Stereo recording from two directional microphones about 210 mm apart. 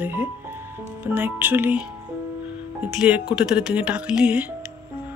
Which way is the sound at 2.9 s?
5° right (ahead or behind).